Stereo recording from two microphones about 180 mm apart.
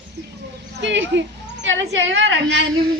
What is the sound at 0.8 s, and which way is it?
A woman's voice, 80° right.